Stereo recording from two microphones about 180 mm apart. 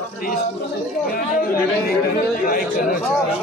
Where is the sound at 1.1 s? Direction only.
55° left (ahead or behind).